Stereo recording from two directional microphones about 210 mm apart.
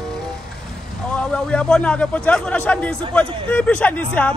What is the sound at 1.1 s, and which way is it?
Speech, 5° left (ahead or behind).